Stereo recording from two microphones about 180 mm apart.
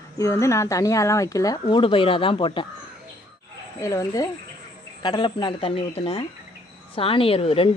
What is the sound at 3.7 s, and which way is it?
Speech, 15° left (ahead or behind).